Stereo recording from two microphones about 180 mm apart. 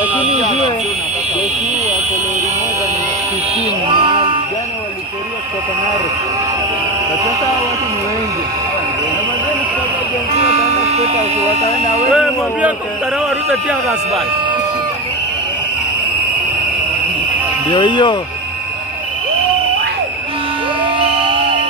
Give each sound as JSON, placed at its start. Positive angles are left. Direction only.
{"t": 0.4, "sound": "fire alarm", "side_deg": 25}
{"t": 3.9, "sound": "a sound", "side_deg": -30}
{"t": 10.3, "sound": "sheep", "side_deg": -40}
{"t": 12.1, "sound": "speech", "side_deg": 0}
{"t": 17.6, "sound": "speech", "side_deg": 25}
{"t": 20.8, "sound": "music", "side_deg": -30}